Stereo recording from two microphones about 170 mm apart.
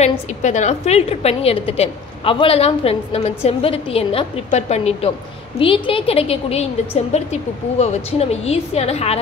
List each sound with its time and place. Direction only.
0.0 s a woman's voice: 45° left (ahead or behind)